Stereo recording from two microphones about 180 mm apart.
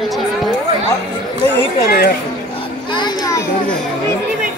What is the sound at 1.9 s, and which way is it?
Speech, 55° left (ahead or behind).